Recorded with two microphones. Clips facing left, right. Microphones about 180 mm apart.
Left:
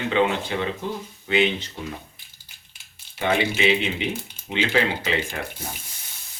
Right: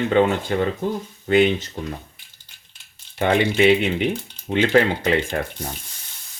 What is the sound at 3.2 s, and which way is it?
Speech, 55° right (ahead or behind).